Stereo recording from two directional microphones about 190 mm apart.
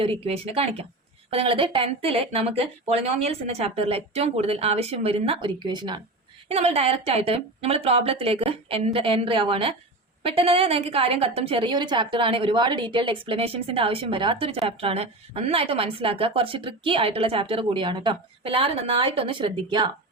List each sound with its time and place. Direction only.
0.0 s a woman's voice: 30° right (ahead or behind)
6.5 s a woman's voice: 35° right (ahead or behind)